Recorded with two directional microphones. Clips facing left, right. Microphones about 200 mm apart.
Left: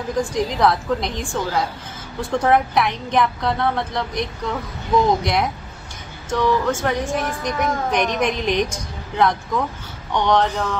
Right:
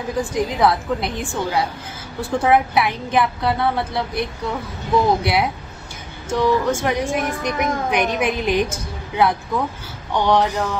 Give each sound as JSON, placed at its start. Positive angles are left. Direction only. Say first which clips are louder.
{"t": 0.2, "sound": "a woman's voice", "louder": "even", "side_deg": -5}